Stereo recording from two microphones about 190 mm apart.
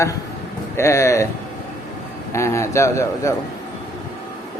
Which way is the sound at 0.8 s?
15° left (ahead or behind).